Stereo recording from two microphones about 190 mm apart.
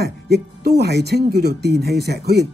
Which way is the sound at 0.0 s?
60° right (ahead or behind).